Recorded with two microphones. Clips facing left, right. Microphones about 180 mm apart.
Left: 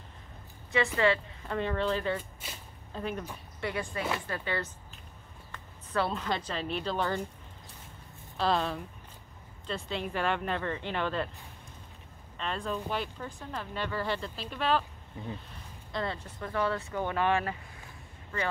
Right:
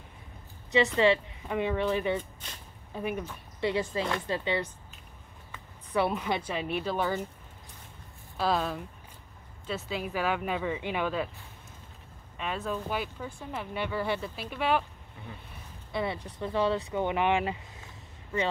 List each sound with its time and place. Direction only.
0.7 s speech: 20° right (ahead or behind)
3.6 s a woman's voice: 25° right (ahead or behind)
8.4 s speech: 5° right (ahead or behind)
12.4 s speech: 5° right (ahead or behind)